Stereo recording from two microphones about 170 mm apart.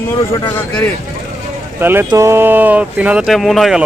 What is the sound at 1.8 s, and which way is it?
Speech, 15° right (ahead or behind).